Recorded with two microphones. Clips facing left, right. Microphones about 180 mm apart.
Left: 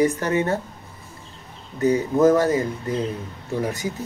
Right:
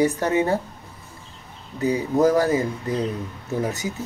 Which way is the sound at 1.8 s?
15° right (ahead or behind).